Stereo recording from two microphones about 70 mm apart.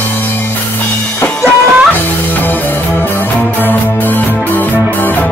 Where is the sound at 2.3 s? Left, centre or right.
Left.